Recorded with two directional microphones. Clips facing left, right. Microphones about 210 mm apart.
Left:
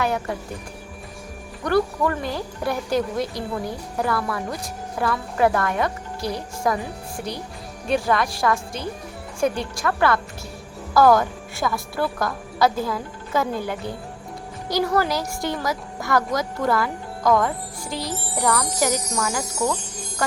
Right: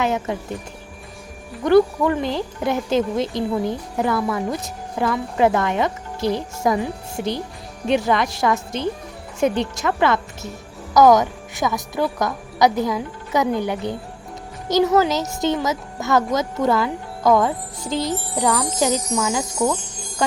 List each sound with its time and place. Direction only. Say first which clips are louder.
0.0 s speech: right 2 dB; 20° right (ahead or behind)
1.6 s speech: right 6 dB; 25° right (ahead or behind)
18.3 s jingle bell: right 2 dB; 20° right (ahead or behind)